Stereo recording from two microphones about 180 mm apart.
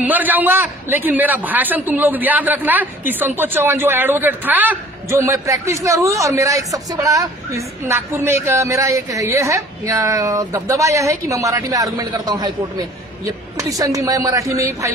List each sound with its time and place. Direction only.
0.0 s a man's voice: 10° right (ahead or behind)